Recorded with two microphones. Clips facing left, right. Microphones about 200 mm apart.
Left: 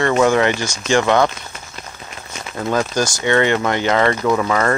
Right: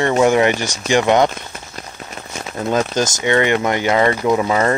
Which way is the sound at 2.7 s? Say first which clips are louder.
Right 1 dB; 20° right (ahead or behind).